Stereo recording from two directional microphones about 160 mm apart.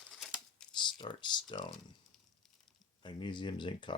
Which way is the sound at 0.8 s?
30° left (ahead or behind).